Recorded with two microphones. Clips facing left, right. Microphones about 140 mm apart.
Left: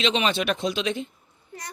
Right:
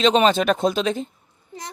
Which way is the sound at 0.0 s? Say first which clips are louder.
Right 7 dB; 45° right (ahead or behind).